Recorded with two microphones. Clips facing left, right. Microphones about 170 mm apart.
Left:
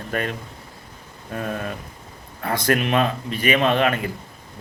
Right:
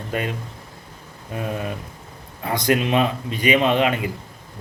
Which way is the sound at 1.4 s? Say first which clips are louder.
Right 1 dB; 15° right (ahead or behind).